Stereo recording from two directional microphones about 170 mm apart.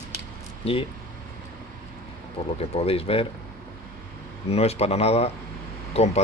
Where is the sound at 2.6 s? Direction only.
35° left (ahead or behind).